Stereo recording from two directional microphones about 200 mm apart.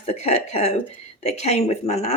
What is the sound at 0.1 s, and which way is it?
Speech, 35° left (ahead or behind).